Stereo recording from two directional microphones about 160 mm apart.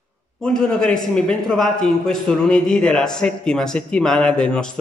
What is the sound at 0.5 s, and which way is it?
A man's voice, 5° left (ahead or behind).